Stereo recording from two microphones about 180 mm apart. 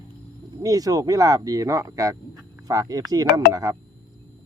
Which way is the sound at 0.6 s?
20° right (ahead or behind).